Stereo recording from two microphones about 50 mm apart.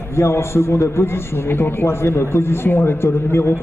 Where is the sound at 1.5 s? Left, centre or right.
Left.